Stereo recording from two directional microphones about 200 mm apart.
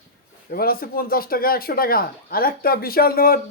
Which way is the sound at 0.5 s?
50° left (ahead or behind).